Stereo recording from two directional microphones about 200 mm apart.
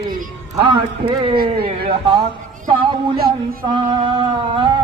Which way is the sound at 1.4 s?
50° right (ahead or behind).